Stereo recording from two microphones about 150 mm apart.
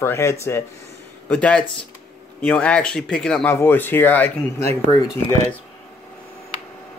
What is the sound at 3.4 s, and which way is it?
Speech, 15° left (ahead or behind).